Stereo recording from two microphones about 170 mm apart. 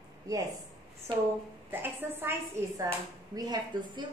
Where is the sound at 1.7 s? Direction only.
10° right (ahead or behind).